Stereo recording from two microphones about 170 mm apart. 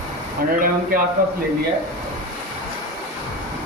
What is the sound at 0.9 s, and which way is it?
Speech, 55° right (ahead or behind).